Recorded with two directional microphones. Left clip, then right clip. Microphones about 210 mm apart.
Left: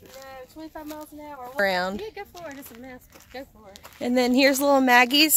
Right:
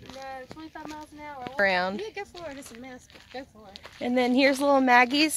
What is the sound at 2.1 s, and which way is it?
Speech, 60° right (ahead or behind).